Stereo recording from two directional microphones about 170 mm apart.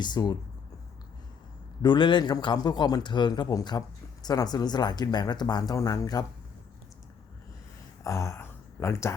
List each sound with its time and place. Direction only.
0.0 s speech: 25° left (ahead or behind)
1.8 s speech: 30° left (ahead or behind)
8.0 s speech: 20° left (ahead or behind)